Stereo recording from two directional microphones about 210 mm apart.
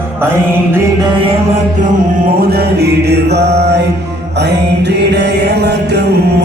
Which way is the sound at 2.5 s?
50° right (ahead or behind).